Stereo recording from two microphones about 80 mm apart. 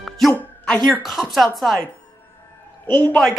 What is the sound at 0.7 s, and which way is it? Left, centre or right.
Speech, centre.